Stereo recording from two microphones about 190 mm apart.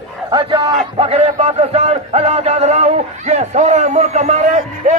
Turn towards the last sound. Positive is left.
turn(degrees=-35)  # may be behind; listen again after turning